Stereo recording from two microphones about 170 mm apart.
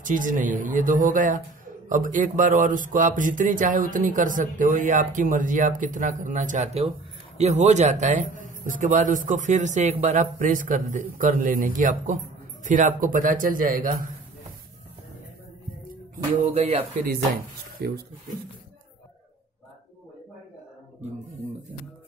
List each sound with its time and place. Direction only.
0.0 s speech: 50° right (ahead or behind)
16.4 s speech: 40° right (ahead or behind)
17.0 s speech: 60° right (ahead or behind)